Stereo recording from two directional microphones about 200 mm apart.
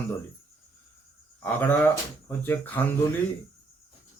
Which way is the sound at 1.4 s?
10° left (ahead or behind).